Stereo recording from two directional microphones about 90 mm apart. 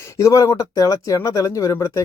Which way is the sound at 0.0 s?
35° left (ahead or behind).